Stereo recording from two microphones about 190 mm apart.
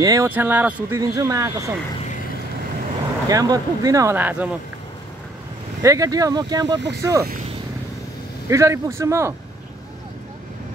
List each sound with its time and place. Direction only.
0.0 s speech: 20° right (ahead or behind)
3.3 s speech: 20° right (ahead or behind)
5.8 s speech: 15° right (ahead or behind)
8.5 s speech: 15° right (ahead or behind)